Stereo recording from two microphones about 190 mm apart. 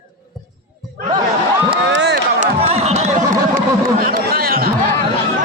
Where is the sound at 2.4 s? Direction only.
35° right (ahead or behind).